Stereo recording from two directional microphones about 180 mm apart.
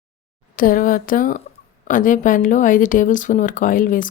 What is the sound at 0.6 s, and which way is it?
Speech, 50° left (ahead or behind).